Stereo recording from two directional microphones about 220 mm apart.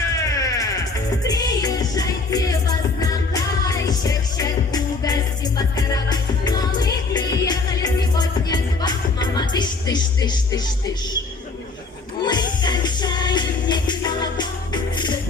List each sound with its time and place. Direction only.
0.2 s music: 15° left (ahead or behind)
12.2 s music: 20° left (ahead or behind)